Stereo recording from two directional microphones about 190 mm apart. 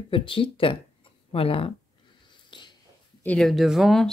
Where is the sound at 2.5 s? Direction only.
25° left (ahead or behind).